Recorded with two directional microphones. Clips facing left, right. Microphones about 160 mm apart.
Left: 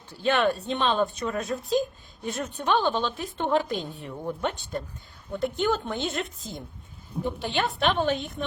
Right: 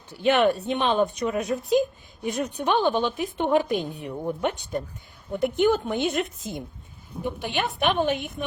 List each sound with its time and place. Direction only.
0.1 s a woman's voice: 15° right (ahead or behind)